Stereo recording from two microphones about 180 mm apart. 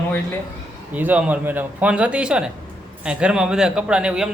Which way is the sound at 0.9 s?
10° right (ahead or behind).